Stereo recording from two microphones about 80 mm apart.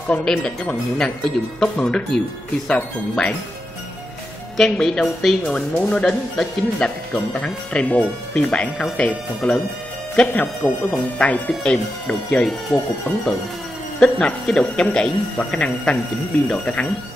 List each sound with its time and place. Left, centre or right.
0.2 s speech: centre
4.6 s a woman's voice: centre
13.9 s speech: centre